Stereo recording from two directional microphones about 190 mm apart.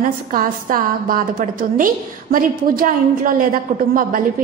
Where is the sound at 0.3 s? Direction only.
45° right (ahead or behind).